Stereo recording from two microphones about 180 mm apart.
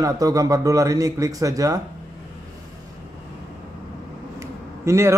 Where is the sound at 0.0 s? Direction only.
20° right (ahead or behind).